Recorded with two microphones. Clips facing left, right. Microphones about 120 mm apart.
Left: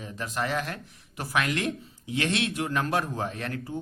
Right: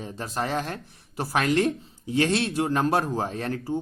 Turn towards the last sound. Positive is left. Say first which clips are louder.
# right 5 dB
turn(degrees=-30)  # may be behind; listen again after turning